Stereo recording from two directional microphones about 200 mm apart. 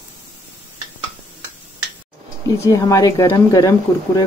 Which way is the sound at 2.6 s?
15° left (ahead or behind).